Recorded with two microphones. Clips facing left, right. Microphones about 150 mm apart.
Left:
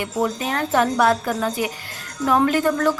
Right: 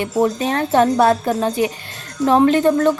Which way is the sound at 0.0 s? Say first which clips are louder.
Right 5 dB; 30° right (ahead or behind).